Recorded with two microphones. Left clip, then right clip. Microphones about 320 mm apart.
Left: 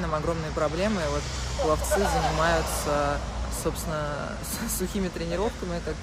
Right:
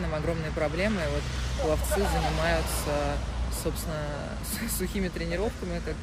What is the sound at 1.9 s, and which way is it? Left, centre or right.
Speech, left.